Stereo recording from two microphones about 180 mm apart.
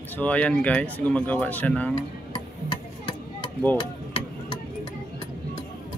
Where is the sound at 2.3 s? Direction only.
25° left (ahead or behind).